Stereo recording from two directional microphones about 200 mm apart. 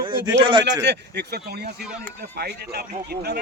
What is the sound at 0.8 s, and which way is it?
A man's voice, 55° right (ahead or behind).